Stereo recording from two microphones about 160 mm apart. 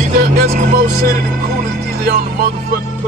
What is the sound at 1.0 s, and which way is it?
Music, 70° right (ahead or behind).